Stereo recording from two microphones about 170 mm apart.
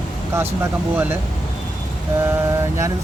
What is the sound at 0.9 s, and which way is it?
Speech, 15° right (ahead or behind).